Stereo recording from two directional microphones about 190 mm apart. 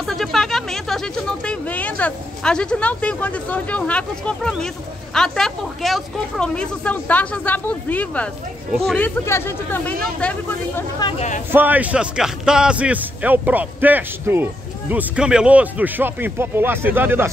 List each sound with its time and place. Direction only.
0.0 s speech: centre (ahead or behind)
11.0 s speech: 25° left (ahead or behind)
11.5 s speech: 10° right (ahead or behind)